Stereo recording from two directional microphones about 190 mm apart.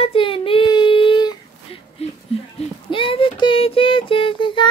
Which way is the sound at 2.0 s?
35° left (ahead or behind).